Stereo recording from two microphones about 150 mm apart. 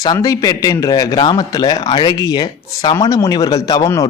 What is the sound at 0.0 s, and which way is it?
Speech, 25° left (ahead or behind).